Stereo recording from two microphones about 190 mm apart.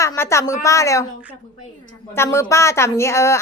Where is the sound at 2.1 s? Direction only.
15° left (ahead or behind).